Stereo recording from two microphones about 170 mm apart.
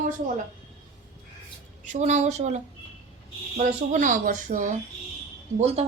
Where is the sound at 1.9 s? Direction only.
45° right (ahead or behind).